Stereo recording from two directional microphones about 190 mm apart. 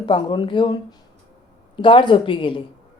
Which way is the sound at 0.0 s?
25° left (ahead or behind).